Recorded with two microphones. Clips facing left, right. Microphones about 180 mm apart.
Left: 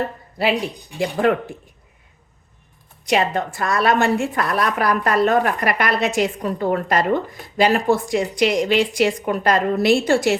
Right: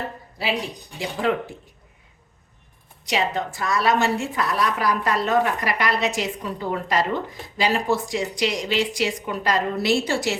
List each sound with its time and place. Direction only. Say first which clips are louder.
1.2 s a woman's voice: left 4 dB; 55° left (ahead or behind)
3.1 s a woman's voice: left 5 dB; 55° left (ahead or behind)